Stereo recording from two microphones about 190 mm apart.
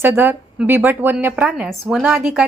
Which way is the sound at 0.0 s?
10° right (ahead or behind).